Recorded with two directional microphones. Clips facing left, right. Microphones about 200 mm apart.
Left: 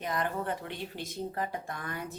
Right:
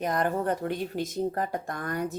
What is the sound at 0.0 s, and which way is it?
A woman's voice, 45° right (ahead or behind).